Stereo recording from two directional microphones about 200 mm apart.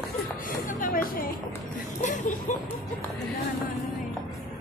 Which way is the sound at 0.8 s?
45° left (ahead or behind).